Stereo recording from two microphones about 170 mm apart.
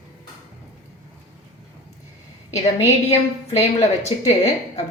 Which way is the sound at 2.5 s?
40° left (ahead or behind).